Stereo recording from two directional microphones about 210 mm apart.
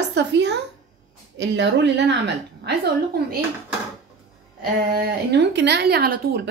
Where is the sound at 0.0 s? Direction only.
55° right (ahead or behind).